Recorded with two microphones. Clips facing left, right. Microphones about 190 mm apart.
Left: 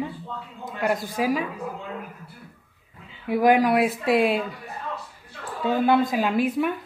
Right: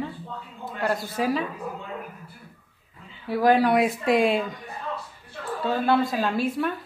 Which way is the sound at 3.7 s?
5° left (ahead or behind).